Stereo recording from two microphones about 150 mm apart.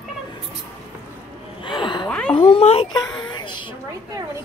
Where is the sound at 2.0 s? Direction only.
5° left (ahead or behind).